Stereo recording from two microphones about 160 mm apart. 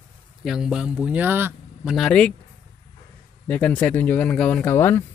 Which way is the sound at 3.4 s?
10° left (ahead or behind).